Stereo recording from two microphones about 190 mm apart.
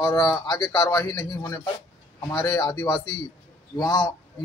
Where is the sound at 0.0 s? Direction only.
20° left (ahead or behind).